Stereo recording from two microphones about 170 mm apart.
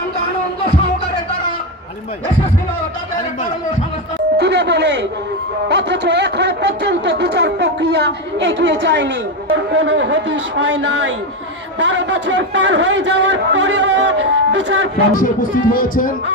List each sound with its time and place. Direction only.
4.4 s music: 80° right
5.6 s a sound: 80° right
9.7 s a man's voice: 90° right
15.1 s speech: 55° left (ahead or behind)